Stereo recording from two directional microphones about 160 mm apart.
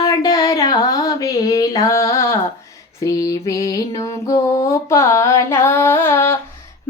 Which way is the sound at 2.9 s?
20° left (ahead or behind).